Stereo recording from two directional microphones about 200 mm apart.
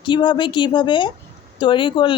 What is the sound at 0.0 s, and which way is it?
A woman's voice, 25° left (ahead or behind).